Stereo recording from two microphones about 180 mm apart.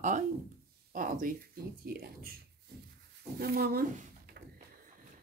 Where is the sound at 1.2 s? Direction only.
55° right (ahead or behind).